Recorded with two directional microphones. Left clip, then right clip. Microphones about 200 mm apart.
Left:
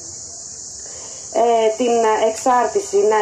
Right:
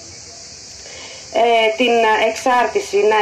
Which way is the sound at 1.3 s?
35° right (ahead or behind).